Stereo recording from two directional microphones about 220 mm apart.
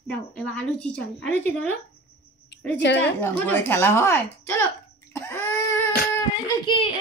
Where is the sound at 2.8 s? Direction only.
55° left (ahead or behind).